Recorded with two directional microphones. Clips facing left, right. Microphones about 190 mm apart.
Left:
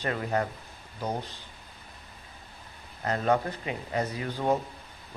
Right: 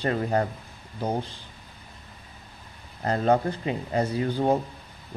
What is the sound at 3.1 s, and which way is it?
A man's voice, 30° right (ahead or behind).